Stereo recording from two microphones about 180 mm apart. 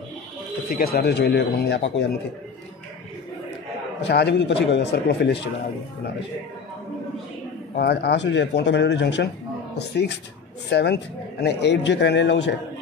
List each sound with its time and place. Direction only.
0.7 s speech: 55° left (ahead or behind)
4.0 s a man's voice: 70° left (ahead or behind)
7.7 s a man's voice: 65° left (ahead or behind); by 12.5 s 80° left